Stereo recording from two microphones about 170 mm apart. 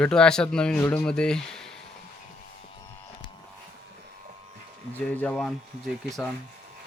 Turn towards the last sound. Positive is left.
turn(degrees=0)  # may be behind; listen again after turning